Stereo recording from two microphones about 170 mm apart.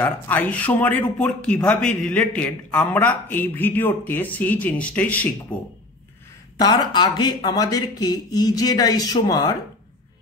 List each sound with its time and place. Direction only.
0.0 s a man's voice: 10° left (ahead or behind)
6.6 s speech: 25° left (ahead or behind)